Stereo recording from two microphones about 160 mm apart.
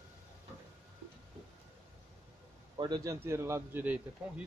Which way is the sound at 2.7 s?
25° right (ahead or behind).